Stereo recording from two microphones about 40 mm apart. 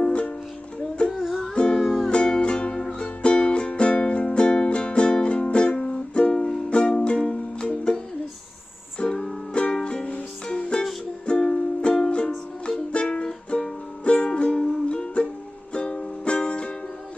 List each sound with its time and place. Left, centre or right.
0.0 s music: left
1.1 s music: centre
1.5 s music: left
1.8 s music: centre
2.0 s music: left
9.0 s music: left
11.2 s music: left